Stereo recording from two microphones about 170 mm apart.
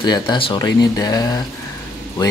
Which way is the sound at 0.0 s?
25° left (ahead or behind).